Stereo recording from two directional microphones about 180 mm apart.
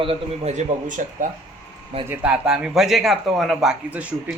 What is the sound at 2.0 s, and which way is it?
A man's voice, 10° right (ahead or behind).